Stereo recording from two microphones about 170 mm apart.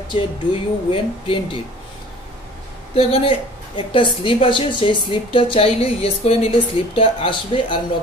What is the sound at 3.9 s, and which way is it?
A woman's voice, 30° left (ahead or behind).